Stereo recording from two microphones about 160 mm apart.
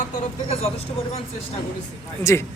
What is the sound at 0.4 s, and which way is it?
Speech, 40° left (ahead or behind).